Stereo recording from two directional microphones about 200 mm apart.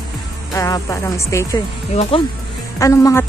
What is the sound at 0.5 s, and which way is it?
Speech, 15° left (ahead or behind).